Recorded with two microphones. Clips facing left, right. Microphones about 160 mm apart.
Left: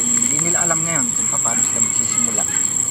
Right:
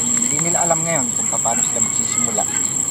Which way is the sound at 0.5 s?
20° right (ahead or behind).